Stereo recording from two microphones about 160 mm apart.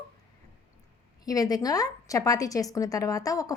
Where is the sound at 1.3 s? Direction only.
25° left (ahead or behind).